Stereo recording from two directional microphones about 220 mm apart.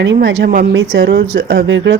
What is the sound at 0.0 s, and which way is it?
Speech, 55° right (ahead or behind).